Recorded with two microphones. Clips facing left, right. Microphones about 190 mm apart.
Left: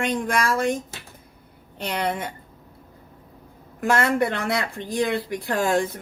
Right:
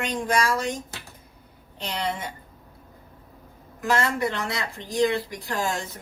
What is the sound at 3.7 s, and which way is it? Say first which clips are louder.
Speech: left 4 dB; 55° left (ahead or behind).